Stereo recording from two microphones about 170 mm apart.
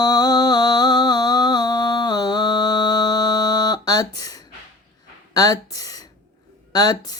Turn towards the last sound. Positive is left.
turn(degrees=25)  # may be behind; listen again after turning